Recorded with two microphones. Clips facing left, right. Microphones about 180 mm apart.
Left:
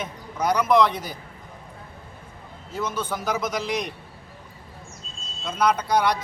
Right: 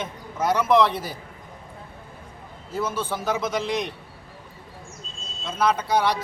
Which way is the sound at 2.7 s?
5° right (ahead or behind).